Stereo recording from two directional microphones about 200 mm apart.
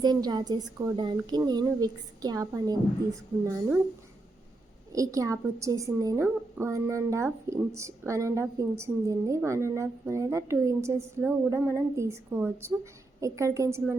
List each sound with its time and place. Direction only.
0.0 s a woman's voice: 20° right (ahead or behind)
4.9 s a woman's voice: 15° right (ahead or behind)